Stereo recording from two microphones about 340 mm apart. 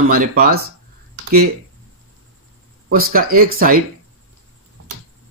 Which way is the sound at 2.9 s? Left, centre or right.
Right.